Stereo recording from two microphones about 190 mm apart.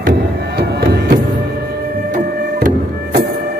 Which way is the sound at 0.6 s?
60° right (ahead or behind).